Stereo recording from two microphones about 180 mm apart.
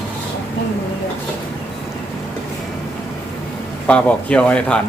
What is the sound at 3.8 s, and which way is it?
Speech, 5° left (ahead or behind).